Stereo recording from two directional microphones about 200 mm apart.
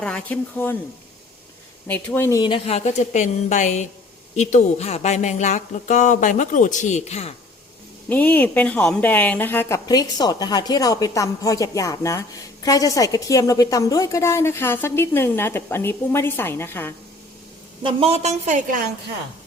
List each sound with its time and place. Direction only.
0.0 s a woman's voice: 5° left (ahead or behind)
1.9 s speech: 10° left (ahead or behind); by 7.3 s 30° left (ahead or behind)
8.1 s a woman's voice: 10° left (ahead or behind)
17.8 s a woman's voice: 30° right (ahead or behind)